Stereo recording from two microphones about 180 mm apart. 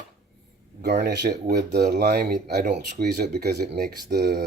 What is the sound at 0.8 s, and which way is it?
Speech, 65° right (ahead or behind).